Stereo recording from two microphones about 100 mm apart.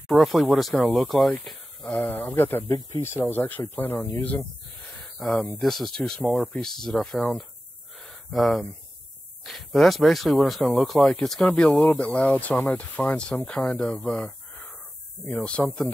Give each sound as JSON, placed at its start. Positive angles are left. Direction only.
{"t": 0.1, "sound": "speech", "side_deg": 0}
{"t": 1.4, "sound": "a sound", "side_deg": 0}
{"t": 1.9, "sound": "speech", "side_deg": 20}
{"t": 5.6, "sound": "speech", "side_deg": 0}
{"t": 8.0, "sound": "a sound", "side_deg": 0}
{"t": 9.4, "sound": "speech", "side_deg": 0}